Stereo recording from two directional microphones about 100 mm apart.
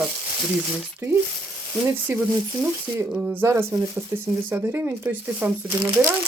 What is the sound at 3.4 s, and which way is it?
Speech, 30° right (ahead or behind).